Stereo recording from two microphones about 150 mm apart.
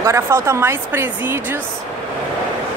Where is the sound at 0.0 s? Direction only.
15° right (ahead or behind).